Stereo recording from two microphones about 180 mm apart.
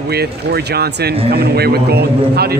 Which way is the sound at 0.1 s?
60° right (ahead or behind).